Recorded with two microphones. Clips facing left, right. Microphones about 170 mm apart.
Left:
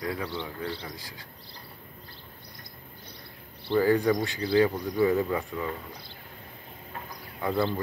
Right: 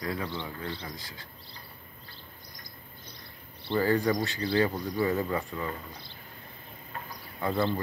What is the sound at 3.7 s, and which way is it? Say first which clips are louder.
Speech: left 3 dB; 15° left (ahead or behind).